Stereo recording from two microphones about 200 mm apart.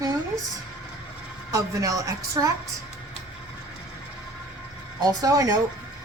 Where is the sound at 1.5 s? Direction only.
15° right (ahead or behind).